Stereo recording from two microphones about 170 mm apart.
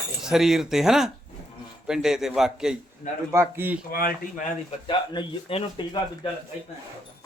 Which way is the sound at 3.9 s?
60° left (ahead or behind).